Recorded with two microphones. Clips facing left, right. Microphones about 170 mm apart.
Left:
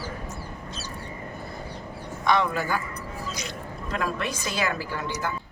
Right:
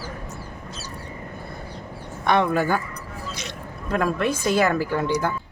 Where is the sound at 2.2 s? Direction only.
55° right (ahead or behind).